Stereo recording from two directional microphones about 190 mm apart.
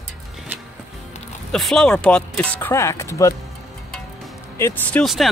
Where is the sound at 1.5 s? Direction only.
Centre (ahead or behind).